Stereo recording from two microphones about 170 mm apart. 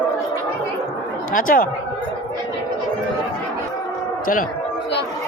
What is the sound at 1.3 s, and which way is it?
Speech, 55° left (ahead or behind).